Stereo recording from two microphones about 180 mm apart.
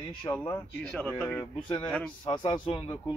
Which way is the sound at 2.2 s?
25° left (ahead or behind).